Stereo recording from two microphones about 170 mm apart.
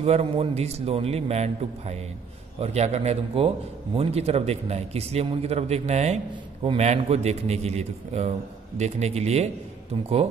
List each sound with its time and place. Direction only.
0.0 s a man's voice: 35° right (ahead or behind)